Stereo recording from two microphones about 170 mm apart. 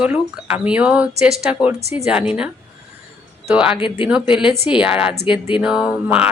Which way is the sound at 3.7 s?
30° left (ahead or behind).